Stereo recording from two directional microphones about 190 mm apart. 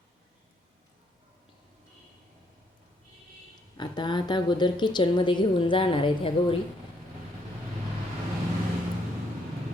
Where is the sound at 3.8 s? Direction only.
25° left (ahead or behind).